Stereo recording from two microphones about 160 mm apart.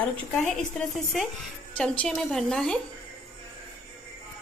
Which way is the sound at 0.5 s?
Centre (ahead or behind).